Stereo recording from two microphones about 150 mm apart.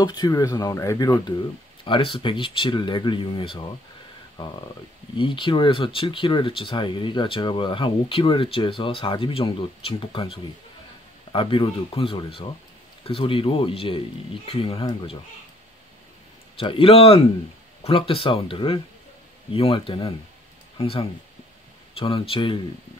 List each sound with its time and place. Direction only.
0.0 s speech: 30° left (ahead or behind)
1.9 s speech: 35° left (ahead or behind)
16.5 s speech: 35° left (ahead or behind)